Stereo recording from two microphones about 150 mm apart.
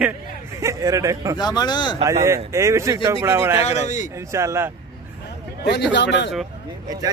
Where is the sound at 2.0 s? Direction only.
20° right (ahead or behind).